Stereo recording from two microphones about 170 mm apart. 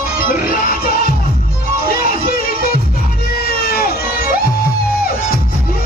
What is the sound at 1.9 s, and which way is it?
Music, 60° left (ahead or behind).